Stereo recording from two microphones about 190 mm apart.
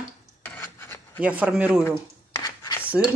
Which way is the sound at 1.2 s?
5° right (ahead or behind).